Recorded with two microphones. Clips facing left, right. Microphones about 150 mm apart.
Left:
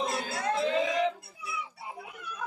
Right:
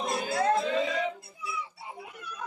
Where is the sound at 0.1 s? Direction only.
20° right (ahead or behind).